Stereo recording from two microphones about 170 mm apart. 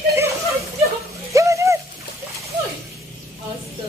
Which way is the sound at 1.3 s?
20° right (ahead or behind).